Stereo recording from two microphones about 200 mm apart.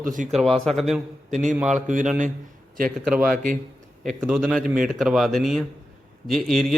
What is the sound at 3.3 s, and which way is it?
Speech, 45° right (ahead or behind).